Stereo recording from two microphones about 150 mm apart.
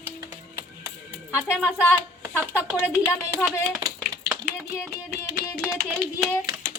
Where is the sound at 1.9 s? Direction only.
10° right (ahead or behind).